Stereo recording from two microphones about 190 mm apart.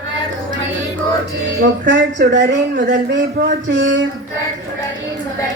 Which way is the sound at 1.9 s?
70° right (ahead or behind).